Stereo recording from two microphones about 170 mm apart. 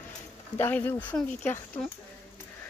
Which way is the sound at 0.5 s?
10° left (ahead or behind).